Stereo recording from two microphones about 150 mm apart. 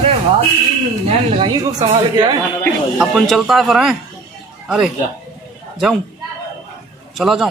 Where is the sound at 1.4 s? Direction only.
30° right (ahead or behind).